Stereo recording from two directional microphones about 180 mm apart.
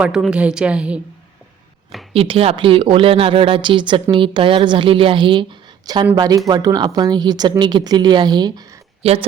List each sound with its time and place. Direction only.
0.0 s a woman's voice: 5° right (ahead or behind)
2.1 s a woman's voice: 30° right (ahead or behind)
9.0 s speech: 35° right (ahead or behind)